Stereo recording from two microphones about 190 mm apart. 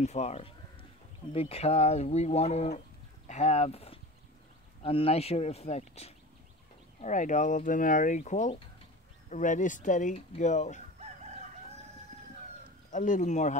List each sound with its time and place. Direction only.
0.0 s speech: 35° left (ahead or behind)
12.9 s speech: 40° left (ahead or behind)